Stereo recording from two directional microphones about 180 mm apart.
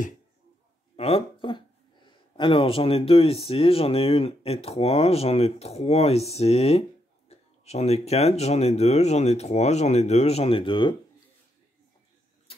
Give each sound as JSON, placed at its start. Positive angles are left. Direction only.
{"t": 0.9, "sound": "speech", "side_deg": 30}
{"t": 12.5, "sound": "vehicle", "side_deg": 30}